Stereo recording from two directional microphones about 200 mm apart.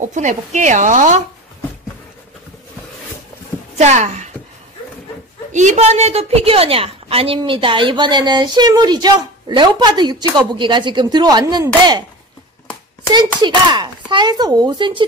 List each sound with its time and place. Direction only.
0.0 s speech: 40° right (ahead or behind)
3.7 s speech: 35° right (ahead or behind)
5.5 s a woman's voice: 35° right (ahead or behind); by 12.0 s 20° right (ahead or behind)
13.4 s a woman's voice: 20° right (ahead or behind)